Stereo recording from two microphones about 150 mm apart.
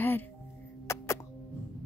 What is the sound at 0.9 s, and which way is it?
Music, 20° left (ahead or behind).